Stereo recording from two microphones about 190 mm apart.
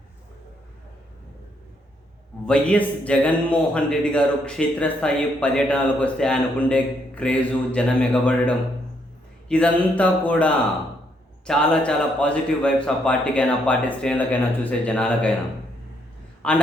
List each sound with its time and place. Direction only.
2.5 s a man's voice: 5° left (ahead or behind)
16.4 s a man's voice: 5° left (ahead or behind)